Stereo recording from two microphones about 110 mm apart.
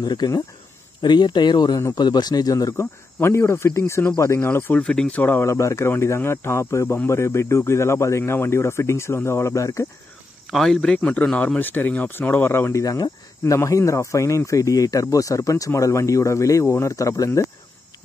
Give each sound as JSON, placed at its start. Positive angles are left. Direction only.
{"t": 0.0, "sound": "speech", "side_deg": 40}
{"t": 10.5, "sound": "speech", "side_deg": 0}
{"t": 11.0, "sound": "speech", "side_deg": 15}
{"t": 12.8, "sound": "speech", "side_deg": 30}